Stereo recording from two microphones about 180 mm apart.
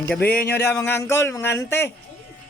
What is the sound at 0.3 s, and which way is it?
Speech, 60° left (ahead or behind).